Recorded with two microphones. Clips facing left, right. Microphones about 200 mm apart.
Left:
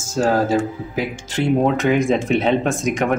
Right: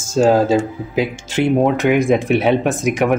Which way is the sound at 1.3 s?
10° right (ahead or behind).